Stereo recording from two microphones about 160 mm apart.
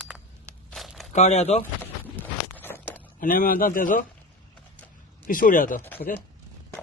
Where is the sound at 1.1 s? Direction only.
40° left (ahead or behind).